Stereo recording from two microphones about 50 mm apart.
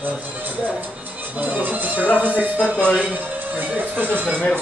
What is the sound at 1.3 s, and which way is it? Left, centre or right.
Speech, right.